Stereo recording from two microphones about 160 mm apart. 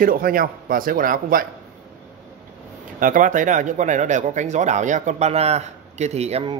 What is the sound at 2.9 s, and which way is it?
Speech, 55° right (ahead or behind).